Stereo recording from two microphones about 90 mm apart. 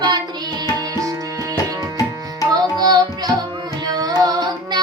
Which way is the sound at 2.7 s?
50° right (ahead or behind).